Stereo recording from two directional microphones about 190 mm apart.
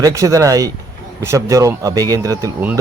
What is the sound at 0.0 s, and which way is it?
A man's voice, 15° right (ahead or behind).